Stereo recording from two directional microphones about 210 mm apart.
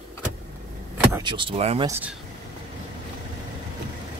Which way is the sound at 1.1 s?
20° right (ahead or behind).